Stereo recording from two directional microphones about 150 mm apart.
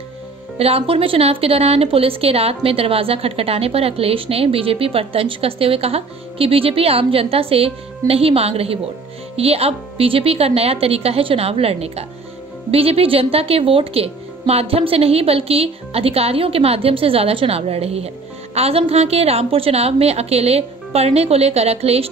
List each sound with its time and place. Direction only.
0.6 s a woman's voice: 40° right (ahead or behind)